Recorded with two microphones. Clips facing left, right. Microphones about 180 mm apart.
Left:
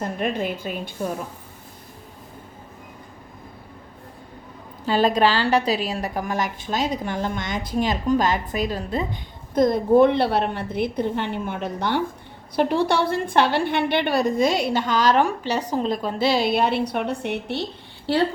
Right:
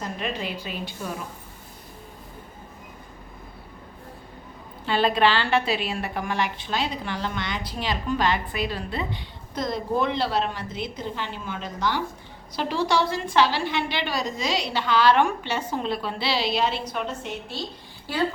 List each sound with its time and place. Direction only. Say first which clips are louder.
0.0 s a woman's voice: left 5 dB; 50° left (ahead or behind)
4.9 s a woman's voice: left 3 dB; 40° left (ahead or behind); by 18.2 s 65° left (ahead or behind)